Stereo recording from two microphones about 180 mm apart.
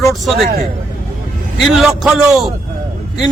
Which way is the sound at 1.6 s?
Centre (ahead or behind).